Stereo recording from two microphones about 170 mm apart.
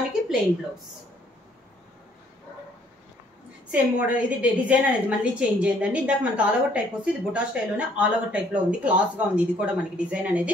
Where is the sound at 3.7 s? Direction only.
10° right (ahead or behind).